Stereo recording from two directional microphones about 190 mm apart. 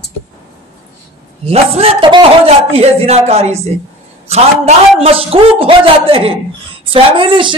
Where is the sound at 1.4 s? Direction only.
30° right (ahead or behind).